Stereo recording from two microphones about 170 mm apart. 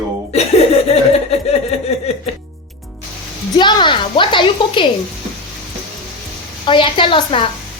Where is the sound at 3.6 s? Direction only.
25° left (ahead or behind).